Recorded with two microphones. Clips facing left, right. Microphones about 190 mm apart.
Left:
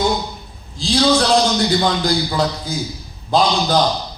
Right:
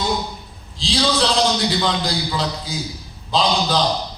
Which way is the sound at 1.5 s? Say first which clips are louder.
Left 3 dB; 50° left (ahead or behind).